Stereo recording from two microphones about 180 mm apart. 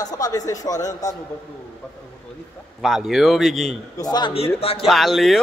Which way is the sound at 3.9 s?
20° left (ahead or behind).